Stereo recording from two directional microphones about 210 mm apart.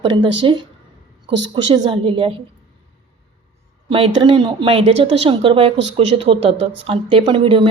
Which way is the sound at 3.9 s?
25° right (ahead or behind).